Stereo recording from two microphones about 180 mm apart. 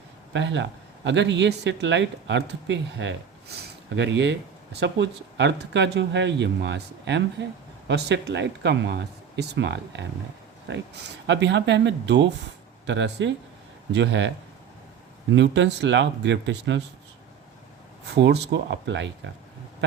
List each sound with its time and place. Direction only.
0.3 s a man's voice: 80° right
18.1 s speech: 70° right (ahead or behind); by 19.3 s 90° right